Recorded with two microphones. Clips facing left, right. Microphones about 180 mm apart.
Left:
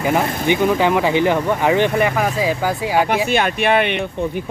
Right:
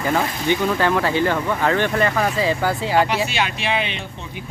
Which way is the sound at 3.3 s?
55° left (ahead or behind).